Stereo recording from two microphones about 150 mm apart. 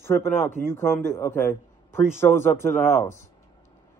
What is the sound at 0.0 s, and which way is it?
A man's voice, 15° left (ahead or behind).